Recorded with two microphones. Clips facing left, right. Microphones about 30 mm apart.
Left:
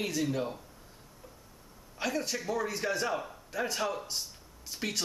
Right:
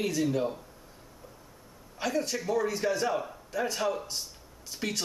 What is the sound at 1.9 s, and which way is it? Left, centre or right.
A man's voice, centre.